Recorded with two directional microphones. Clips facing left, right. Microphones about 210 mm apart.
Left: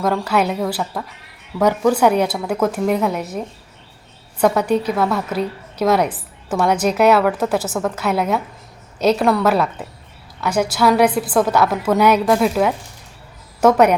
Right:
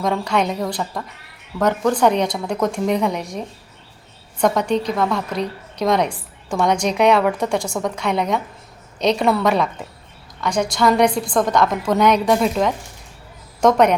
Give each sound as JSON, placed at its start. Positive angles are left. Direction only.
{"t": 0.0, "sound": "a woman's voice", "side_deg": 5}